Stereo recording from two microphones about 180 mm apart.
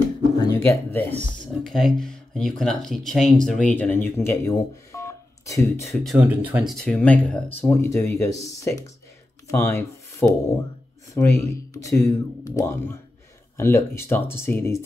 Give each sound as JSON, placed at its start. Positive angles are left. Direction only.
{"t": 0.4, "sound": "speech", "side_deg": 20}
{"t": 1.6, "sound": "speech", "side_deg": 0}
{"t": 5.9, "sound": "speech", "side_deg": 0}
{"t": 6.7, "sound": "speech", "side_deg": 5}